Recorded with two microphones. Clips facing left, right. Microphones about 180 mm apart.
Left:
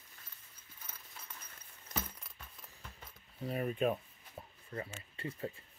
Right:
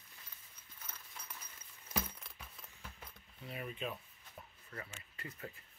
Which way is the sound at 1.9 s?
Centre (ahead or behind).